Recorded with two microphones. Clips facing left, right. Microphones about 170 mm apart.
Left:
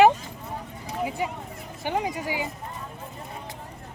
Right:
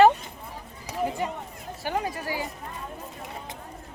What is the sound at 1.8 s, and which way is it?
Speech, 15° left (ahead or behind).